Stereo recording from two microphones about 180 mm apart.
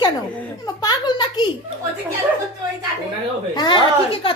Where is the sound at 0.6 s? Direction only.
20° left (ahead or behind).